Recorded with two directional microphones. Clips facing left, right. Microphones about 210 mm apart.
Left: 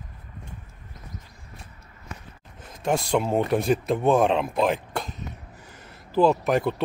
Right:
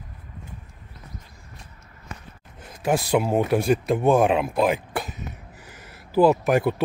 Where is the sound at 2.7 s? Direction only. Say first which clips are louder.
Right 2 dB; 5° right (ahead or behind).